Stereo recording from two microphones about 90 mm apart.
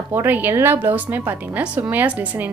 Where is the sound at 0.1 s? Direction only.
20° right (ahead or behind).